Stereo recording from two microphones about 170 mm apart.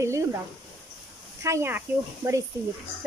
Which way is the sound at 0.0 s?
15° right (ahead or behind).